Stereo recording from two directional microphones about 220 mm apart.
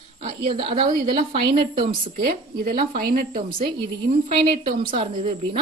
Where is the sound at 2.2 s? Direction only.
45° right (ahead or behind).